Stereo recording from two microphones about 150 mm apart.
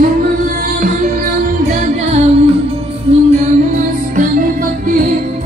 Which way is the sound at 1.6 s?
50° right (ahead or behind).